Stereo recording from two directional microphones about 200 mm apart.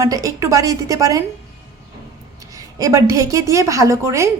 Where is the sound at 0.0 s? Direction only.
15° right (ahead or behind).